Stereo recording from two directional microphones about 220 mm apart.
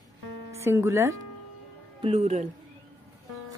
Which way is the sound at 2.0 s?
30° right (ahead or behind).